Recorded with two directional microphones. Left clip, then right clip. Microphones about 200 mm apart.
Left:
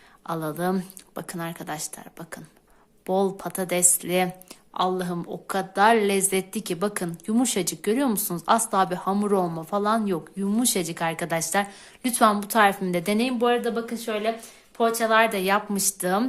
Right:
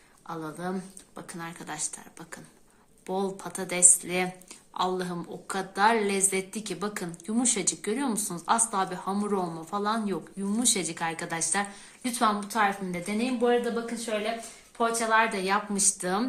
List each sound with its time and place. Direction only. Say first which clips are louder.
0.3 s a woman's voice: left 8 dB; 55° left (ahead or behind)
14.8 s speech: left 4 dB; 60° left (ahead or behind)